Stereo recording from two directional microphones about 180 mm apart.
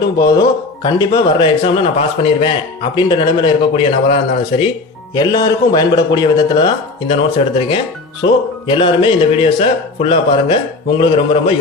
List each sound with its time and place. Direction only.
0.2 s a man's voice: 20° left (ahead or behind)